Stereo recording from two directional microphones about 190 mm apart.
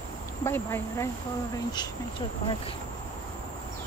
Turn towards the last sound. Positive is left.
turn(degrees=25)  # may be behind; listen again after turning